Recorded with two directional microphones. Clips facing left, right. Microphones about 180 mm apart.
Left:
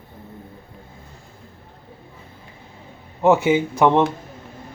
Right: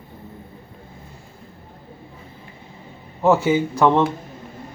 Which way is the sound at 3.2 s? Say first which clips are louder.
Left 1 dB; 15° left (ahead or behind).